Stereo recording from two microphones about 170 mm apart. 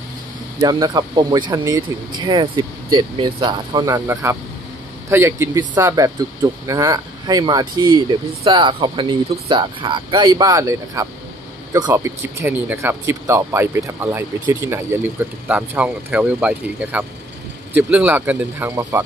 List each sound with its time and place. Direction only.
0.6 s speech: 25° right (ahead or behind)